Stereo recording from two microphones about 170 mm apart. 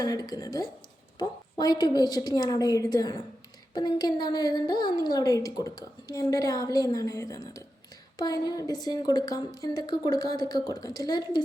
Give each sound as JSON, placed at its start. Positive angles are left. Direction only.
{"t": 0.0, "sound": "a woman's voice", "side_deg": 20}